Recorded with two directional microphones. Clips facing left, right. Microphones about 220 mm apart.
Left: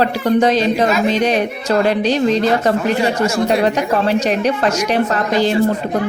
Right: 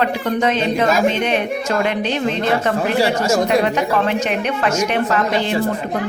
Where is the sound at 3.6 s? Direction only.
35° left (ahead or behind).